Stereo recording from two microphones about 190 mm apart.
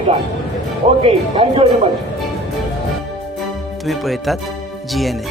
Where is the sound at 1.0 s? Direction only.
30° right (ahead or behind).